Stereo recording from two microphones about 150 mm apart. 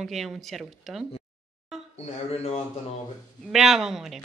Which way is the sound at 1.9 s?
45° left (ahead or behind).